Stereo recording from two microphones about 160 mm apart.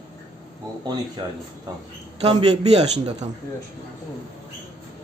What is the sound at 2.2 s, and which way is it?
A man's voice, 40° right (ahead or behind).